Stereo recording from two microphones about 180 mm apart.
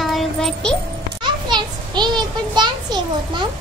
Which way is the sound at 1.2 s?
25° right (ahead or behind).